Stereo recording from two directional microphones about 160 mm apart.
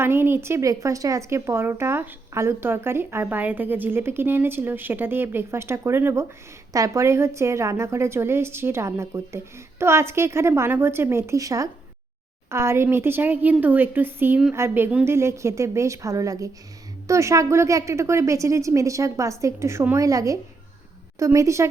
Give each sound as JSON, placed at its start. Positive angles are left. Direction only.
{"t": 0.0, "sound": "a woman's voice", "side_deg": -15}